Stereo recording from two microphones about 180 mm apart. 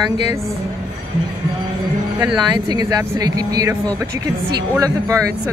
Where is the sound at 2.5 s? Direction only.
20° right (ahead or behind).